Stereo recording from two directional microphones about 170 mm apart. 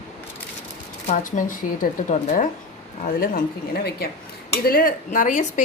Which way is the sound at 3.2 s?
65° left (ahead or behind).